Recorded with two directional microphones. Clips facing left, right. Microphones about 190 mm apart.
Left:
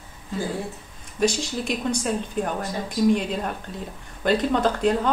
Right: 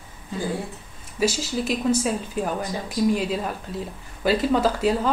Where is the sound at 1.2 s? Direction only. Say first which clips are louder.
Even; 5° right (ahead or behind).